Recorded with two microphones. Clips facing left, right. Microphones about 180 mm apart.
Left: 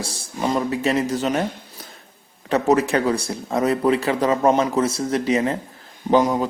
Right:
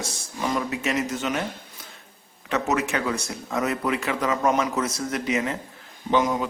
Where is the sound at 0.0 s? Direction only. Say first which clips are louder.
Left 4 dB; 30° left (ahead or behind).